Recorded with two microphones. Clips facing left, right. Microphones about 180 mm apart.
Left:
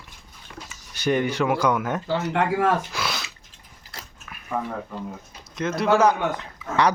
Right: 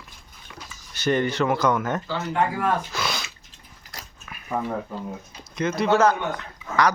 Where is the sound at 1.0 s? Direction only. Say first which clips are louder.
Even; 10° left (ahead or behind).